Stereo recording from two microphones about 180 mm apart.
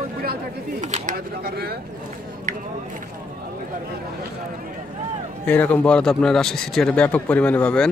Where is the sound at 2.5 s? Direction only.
45° right (ahead or behind).